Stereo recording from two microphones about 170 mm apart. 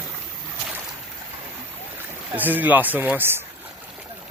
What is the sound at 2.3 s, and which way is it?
Speech, 10° right (ahead or behind).